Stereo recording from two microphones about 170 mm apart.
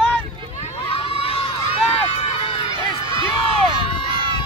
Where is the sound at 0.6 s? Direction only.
35° left (ahead or behind).